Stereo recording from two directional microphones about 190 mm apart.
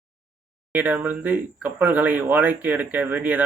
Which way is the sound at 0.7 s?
10° right (ahead or behind).